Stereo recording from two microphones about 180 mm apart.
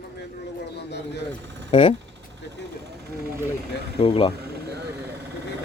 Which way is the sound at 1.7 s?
35° left (ahead or behind).